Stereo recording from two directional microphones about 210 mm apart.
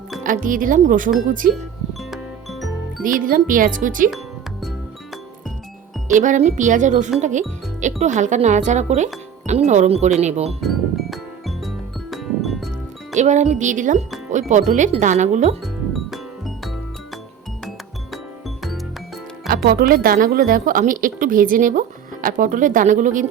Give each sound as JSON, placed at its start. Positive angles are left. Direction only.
{"t": 0.2, "sound": "a woman's voice", "side_deg": -40}
{"t": 1.9, "sound": "music", "side_deg": 0}
{"t": 3.0, "sound": "a woman's voice", "side_deg": -40}
{"t": 6.1, "sound": "a woman's voice", "side_deg": -35}
{"t": 10.6, "sound": "music", "side_deg": 0}
{"t": 13.1, "sound": "a woman's voice", "side_deg": -35}
{"t": 15.6, "sound": "music", "side_deg": 0}
{"t": 18.1, "sound": "music", "side_deg": 0}
{"t": 19.5, "sound": "music", "side_deg": -45}
{"t": 19.9, "sound": "a woman's voice", "side_deg": -45}